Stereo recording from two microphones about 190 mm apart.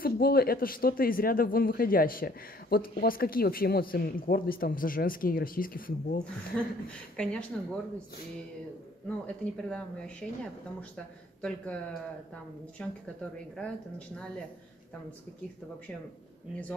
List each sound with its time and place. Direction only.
0.0 s speech: 55° left (ahead or behind)
6.5 s a woman's voice: 5° left (ahead or behind)
9.2 s a woman's voice: 5° left (ahead or behind)